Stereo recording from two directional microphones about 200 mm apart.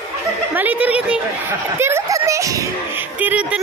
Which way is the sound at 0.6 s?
10° right (ahead or behind).